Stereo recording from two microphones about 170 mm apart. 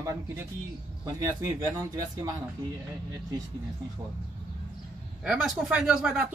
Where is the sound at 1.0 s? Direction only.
20° right (ahead or behind).